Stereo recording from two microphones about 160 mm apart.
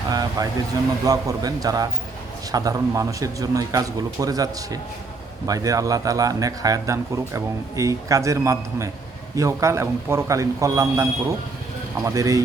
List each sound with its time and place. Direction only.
0.1 s speech: 25° right (ahead or behind)